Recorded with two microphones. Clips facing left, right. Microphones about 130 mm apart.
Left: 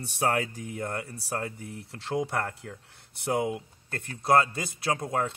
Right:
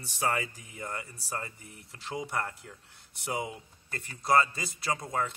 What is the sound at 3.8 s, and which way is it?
Speech, 60° left (ahead or behind).